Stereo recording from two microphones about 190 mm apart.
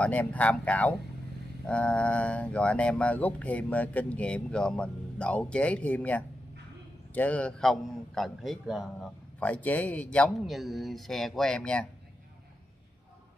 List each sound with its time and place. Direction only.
0.0 s a man's voice: 10° left (ahead or behind)